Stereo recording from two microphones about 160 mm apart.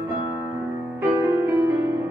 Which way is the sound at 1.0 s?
10° right (ahead or behind).